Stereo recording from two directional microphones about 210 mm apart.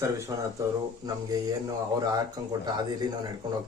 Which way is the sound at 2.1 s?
20° right (ahead or behind).